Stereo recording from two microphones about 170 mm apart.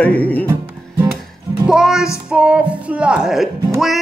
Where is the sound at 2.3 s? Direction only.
5° right (ahead or behind).